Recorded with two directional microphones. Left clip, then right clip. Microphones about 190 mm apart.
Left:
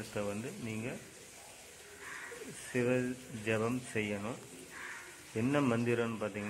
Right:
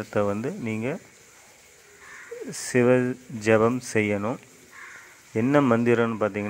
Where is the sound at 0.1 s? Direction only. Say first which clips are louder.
Right 14 dB; 35° right (ahead or behind).